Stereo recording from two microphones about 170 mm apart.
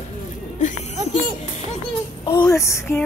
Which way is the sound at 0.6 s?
45° left (ahead or behind).